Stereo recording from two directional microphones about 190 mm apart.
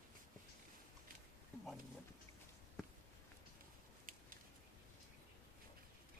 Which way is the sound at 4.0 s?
45° right (ahead or behind).